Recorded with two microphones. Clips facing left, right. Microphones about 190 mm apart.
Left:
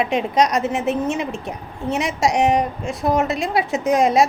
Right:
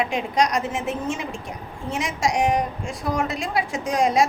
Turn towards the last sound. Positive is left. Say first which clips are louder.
# left 5 dB
turn(degrees=20)  # may be behind; listen again after turning